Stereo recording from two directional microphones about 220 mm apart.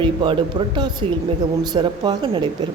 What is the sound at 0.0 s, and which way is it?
A woman's voice, 20° right (ahead or behind).